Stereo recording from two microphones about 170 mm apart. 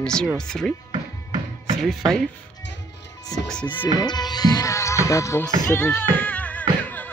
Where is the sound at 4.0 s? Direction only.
25° left (ahead or behind).